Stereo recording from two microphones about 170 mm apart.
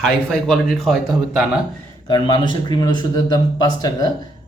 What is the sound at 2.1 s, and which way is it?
Speech, 25° left (ahead or behind).